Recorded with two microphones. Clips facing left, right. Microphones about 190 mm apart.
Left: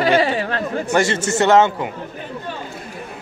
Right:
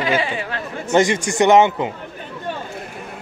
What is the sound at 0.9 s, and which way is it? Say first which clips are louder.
A man's voice: right 3 dB; 15° right (ahead or behind).